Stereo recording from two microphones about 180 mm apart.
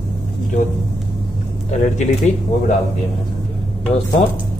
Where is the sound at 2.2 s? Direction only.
40° left (ahead or behind).